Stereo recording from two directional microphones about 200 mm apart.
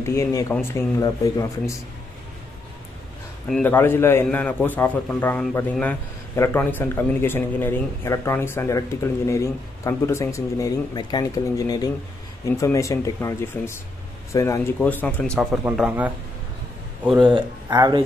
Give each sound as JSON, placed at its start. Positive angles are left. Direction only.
{"t": 0.0, "sound": "a man's voice", "side_deg": 15}
{"t": 3.4, "sound": "a man's voice", "side_deg": 5}
{"t": 17.3, "sound": "speech", "side_deg": -15}